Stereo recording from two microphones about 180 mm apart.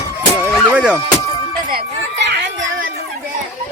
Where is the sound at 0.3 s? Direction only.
10° right (ahead or behind).